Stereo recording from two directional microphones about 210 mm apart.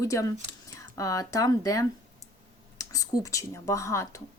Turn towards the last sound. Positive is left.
turn(degrees=15)  # may be behind; listen again after turning